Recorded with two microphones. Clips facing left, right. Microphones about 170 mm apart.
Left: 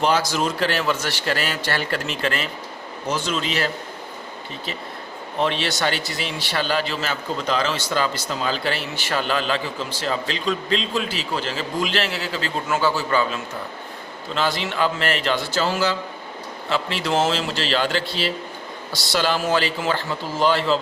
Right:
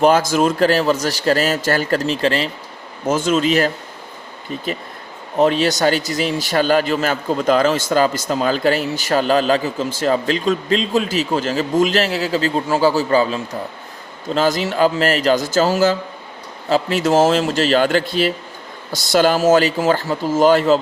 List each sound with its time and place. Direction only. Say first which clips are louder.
0.0 s a man's voice: right 7 dB; 50° right (ahead or behind)
3.1 s a man's voice: right 9 dB; 50° right (ahead or behind)
5.4 s a man's voice: right 8 dB; 40° right (ahead or behind)